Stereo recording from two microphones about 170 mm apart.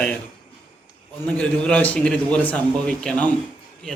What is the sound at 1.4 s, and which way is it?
A man's voice, 10° left (ahead or behind).